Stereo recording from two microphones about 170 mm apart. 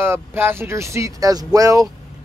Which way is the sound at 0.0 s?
15° right (ahead or behind).